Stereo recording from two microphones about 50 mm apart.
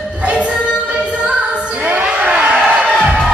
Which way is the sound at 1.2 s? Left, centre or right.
Right.